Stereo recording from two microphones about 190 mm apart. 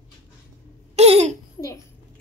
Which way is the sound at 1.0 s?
35° right (ahead or behind).